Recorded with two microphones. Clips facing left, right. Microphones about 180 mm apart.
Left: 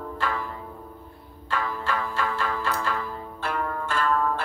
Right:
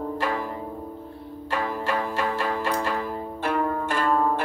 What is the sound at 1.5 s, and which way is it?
Music, 25° right (ahead or behind).